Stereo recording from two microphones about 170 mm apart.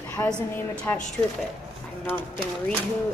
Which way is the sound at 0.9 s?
10° left (ahead or behind).